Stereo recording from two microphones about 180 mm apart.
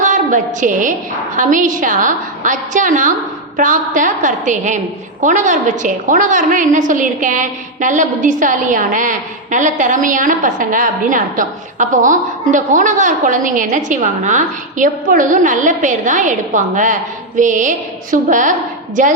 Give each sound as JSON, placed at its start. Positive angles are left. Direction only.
{"t": 0.0, "sound": "a woman's voice", "side_deg": -45}